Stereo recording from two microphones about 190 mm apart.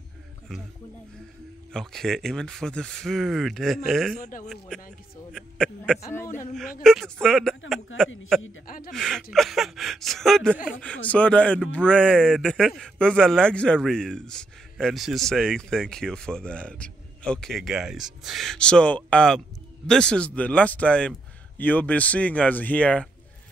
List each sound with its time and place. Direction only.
1.7 s speech: 5° left (ahead or behind)
4.2 s speech: 40° left (ahead or behind)
4.5 s speech: centre (ahead or behind)
7.9 s speech: 90° left
8.6 s speech: 50° left (ahead or behind)
8.9 s a man's voice: centre (ahead or behind)